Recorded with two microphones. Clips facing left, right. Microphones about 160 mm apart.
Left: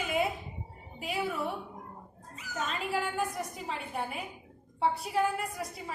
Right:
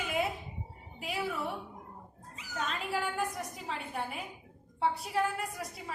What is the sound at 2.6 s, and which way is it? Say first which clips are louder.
A woman's voice: left 2 dB; centre (ahead or behind).